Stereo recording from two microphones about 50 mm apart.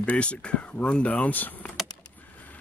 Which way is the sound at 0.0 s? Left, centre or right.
Left.